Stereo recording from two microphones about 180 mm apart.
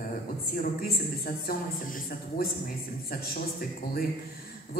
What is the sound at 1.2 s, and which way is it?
A woman's voice, 55° left (ahead or behind).